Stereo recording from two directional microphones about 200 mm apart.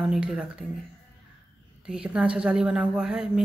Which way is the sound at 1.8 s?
5° right (ahead or behind).